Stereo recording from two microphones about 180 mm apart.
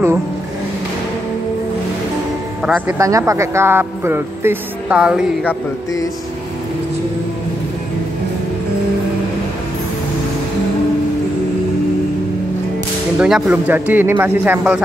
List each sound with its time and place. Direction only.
2.6 s speech: 5° right (ahead or behind)
3.0 s speech: 15° right (ahead or behind)
5.4 s mantra: 10° left (ahead or behind)
13.2 s speech: 5° right (ahead or behind)